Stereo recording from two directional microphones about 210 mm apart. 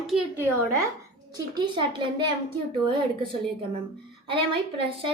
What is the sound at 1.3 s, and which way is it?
Speech, 20° right (ahead or behind).